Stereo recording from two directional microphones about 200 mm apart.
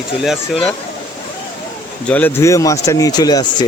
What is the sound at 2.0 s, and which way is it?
A man's voice, 10° left (ahead or behind).